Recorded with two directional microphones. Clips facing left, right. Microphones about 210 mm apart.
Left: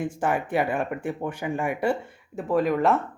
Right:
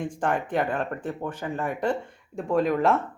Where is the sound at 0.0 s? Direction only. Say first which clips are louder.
Left 1 dB; 5° left (ahead or behind).